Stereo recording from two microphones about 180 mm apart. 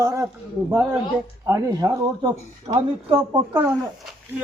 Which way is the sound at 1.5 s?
20° right (ahead or behind).